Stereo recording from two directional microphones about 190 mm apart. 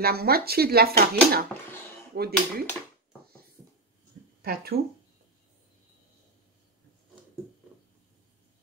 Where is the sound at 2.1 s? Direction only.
55° right (ahead or behind).